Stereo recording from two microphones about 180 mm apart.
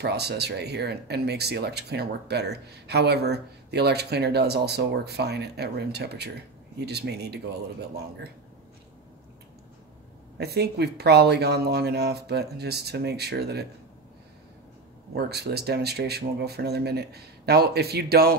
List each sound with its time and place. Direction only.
0.0 s speech: 65° right (ahead or behind)
10.3 s speech: 65° right (ahead or behind)
15.1 s speech: 65° right (ahead or behind)